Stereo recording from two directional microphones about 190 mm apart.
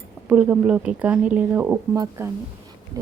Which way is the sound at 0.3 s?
10° right (ahead or behind).